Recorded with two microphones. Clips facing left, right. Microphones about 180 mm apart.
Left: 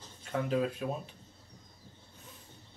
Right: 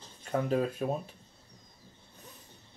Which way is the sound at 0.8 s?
45° right (ahead or behind).